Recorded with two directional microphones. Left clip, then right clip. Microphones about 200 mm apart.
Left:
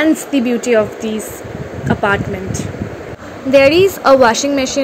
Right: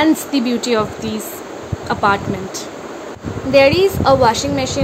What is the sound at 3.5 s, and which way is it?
A woman's voice, 15° left (ahead or behind).